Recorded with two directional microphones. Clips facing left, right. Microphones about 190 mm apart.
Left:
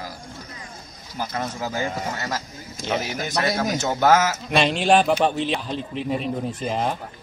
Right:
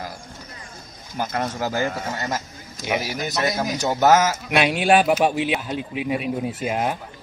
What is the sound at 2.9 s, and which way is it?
A man's voice, 10° right (ahead or behind).